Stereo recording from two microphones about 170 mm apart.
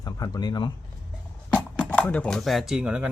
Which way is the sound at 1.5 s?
10° left (ahead or behind).